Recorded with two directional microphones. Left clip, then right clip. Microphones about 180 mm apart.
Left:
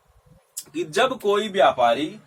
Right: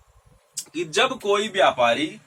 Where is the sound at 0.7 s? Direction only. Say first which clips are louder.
Even; 35° left (ahead or behind).